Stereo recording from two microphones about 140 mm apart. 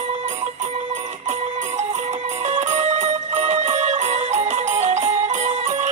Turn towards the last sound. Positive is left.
turn(degrees=-55)  # may be behind; listen again after turning